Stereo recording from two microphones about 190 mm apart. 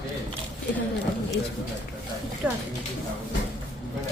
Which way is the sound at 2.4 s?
5° right (ahead or behind).